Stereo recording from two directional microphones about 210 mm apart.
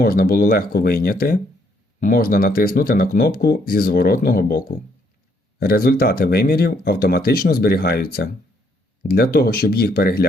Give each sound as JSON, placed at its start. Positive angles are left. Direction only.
{"t": 0.0, "sound": "speech", "side_deg": 45}